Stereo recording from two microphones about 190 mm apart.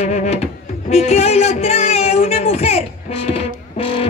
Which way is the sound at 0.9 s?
35° left (ahead or behind).